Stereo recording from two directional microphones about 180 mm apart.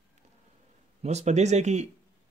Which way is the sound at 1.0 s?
40° right (ahead or behind).